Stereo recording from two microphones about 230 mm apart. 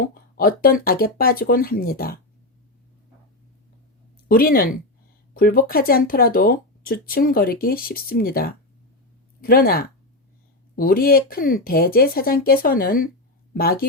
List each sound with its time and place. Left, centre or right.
0.0 s speech: left
4.3 s a woman's voice: left